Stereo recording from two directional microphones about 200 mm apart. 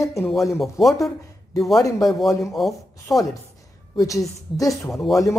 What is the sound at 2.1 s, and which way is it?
Speech, centre (ahead or behind).